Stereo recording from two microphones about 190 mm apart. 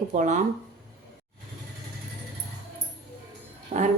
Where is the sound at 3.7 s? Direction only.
35° right (ahead or behind).